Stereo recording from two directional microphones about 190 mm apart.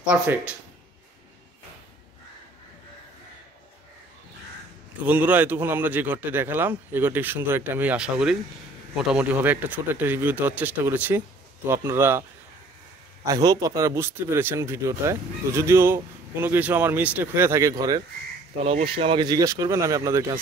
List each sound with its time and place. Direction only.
0.0 s speech: 5° right (ahead or behind)
5.0 s speech: 10° right (ahead or behind)
18.6 s speech: 30° right (ahead or behind); by 20.3 s 15° right (ahead or behind)